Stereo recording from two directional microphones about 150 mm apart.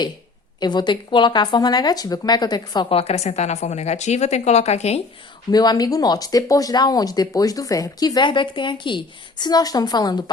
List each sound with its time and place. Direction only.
0.6 s speech: 30° left (ahead or behind)
2.9 s a woman's voice: 45° left (ahead or behind)
5.5 s speech: 25° left (ahead or behind)